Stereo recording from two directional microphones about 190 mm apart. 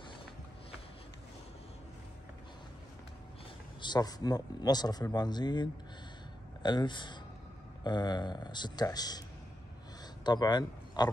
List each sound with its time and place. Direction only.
3.8 s speech: 20° left (ahead or behind)
10.2 s speech: 20° left (ahead or behind)